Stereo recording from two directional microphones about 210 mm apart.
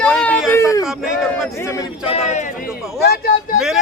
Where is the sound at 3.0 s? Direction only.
50° left (ahead or behind).